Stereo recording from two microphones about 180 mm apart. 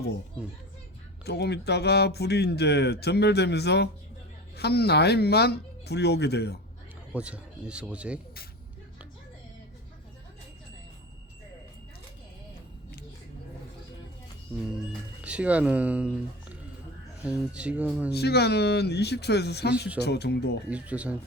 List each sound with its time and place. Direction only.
1.2 s speech: 65° left (ahead or behind)
7.1 s speech: 5° right (ahead or behind)
15.2 s speech: 5° right (ahead or behind)
18.1 s speech: 65° left (ahead or behind)
20.7 s speech: 5° right (ahead or behind)